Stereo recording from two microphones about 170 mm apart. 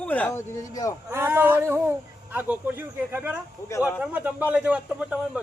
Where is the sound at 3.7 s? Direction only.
20° left (ahead or behind).